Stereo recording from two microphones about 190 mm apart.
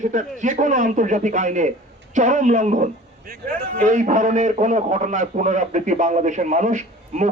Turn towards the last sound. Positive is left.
turn(degrees=-40)  # may be behind; listen again after turning